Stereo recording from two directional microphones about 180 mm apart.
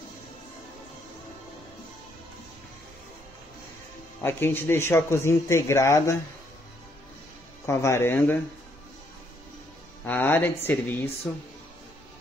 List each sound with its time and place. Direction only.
4.2 s speech: 10° left (ahead or behind)
7.6 s speech: 15° left (ahead or behind)
10.0 s speech: 10° left (ahead or behind)